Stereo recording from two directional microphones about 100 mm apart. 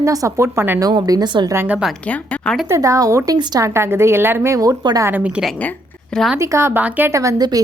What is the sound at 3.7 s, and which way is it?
A woman's voice, 25° right (ahead or behind).